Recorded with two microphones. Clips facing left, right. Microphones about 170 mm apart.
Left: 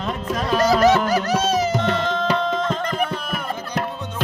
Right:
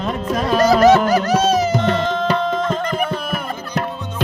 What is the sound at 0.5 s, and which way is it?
Music, 50° right (ahead or behind).